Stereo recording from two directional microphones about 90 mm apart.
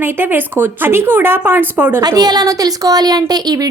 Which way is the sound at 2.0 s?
45° right (ahead or behind).